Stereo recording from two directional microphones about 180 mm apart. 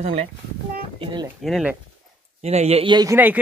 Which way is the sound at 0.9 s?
30° right (ahead or behind).